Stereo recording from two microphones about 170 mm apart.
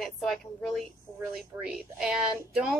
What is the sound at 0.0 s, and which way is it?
A woman's voice, centre (ahead or behind).